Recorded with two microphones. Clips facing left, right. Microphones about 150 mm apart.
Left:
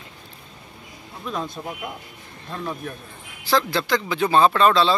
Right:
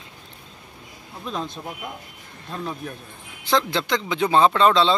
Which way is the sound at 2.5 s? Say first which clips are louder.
Left 1 dB; 10° right (ahead or behind).